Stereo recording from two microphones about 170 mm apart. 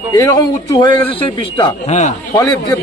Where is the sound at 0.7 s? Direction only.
25° left (ahead or behind).